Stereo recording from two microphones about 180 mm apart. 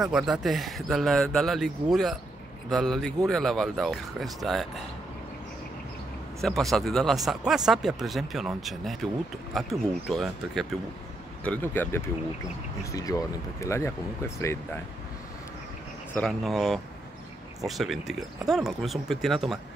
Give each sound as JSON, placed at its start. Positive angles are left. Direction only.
{"t": 0.0, "sound": "speech", "side_deg": 0}
{"t": 6.4, "sound": "speech", "side_deg": 0}
{"t": 16.2, "sound": "speech", "side_deg": 0}